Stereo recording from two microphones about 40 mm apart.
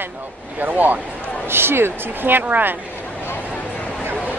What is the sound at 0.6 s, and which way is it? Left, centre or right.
Speech, right.